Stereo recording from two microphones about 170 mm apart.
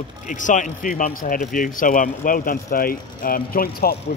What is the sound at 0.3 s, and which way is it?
Speech, 50° left (ahead or behind).